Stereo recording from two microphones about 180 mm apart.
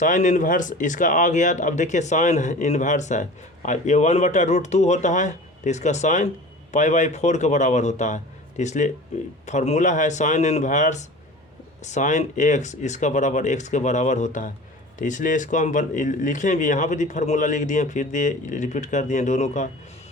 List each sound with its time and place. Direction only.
0.0 s speech: 45° left (ahead or behind)